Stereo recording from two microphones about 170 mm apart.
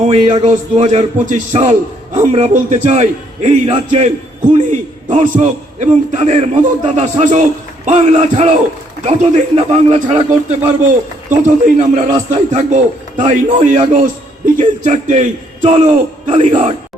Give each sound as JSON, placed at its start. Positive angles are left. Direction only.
{"t": 0.0, "sound": "a man's voice", "side_deg": -40}
{"t": 11.4, "sound": "a man's voice", "side_deg": -45}